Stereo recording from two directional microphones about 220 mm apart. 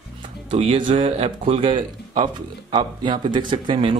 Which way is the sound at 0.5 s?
25° right (ahead or behind).